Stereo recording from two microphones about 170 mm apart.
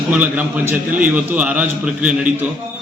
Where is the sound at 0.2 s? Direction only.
10° right (ahead or behind).